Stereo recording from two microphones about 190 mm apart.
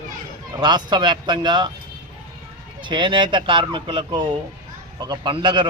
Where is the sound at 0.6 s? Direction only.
25° right (ahead or behind).